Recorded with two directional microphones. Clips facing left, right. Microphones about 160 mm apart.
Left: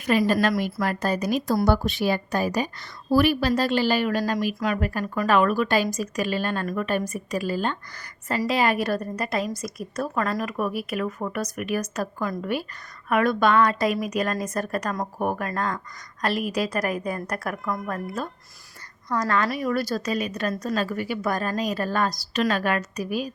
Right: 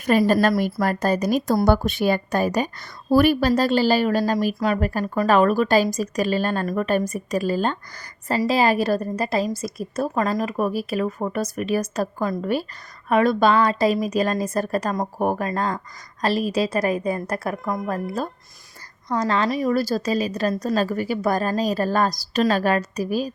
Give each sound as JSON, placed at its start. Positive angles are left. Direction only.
{"t": 0.0, "sound": "a woman's voice", "side_deg": -45}